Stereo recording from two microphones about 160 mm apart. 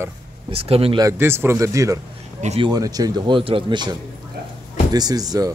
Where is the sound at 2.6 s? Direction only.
25° right (ahead or behind).